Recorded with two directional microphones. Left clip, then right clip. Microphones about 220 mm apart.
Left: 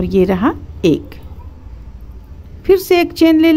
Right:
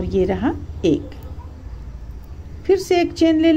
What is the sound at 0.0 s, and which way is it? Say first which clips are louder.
A woman's voice: left 6 dB; 25° left (ahead or behind).